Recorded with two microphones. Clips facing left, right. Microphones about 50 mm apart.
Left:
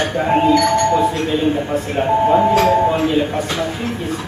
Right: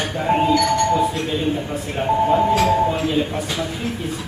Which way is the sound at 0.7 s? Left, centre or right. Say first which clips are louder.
Left 3 dB; centre.